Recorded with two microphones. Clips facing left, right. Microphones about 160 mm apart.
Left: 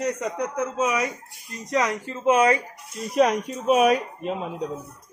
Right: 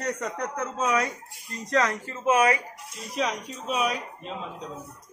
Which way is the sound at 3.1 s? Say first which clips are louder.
Left 9 dB; 50° left (ahead or behind).